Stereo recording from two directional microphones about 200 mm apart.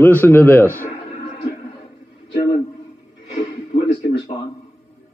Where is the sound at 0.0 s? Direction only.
10° left (ahead or behind).